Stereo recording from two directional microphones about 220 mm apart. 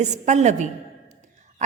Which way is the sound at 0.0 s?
30° right (ahead or behind).